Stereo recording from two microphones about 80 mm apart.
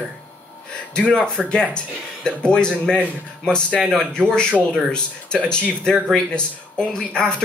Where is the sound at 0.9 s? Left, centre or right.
Centre.